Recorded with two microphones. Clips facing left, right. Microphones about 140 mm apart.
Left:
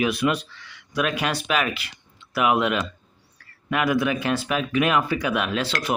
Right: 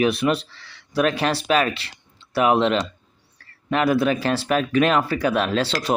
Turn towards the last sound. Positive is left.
turn(degrees=-35)  # may be behind; listen again after turning